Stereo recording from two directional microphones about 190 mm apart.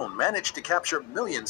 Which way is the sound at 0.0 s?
15° left (ahead or behind).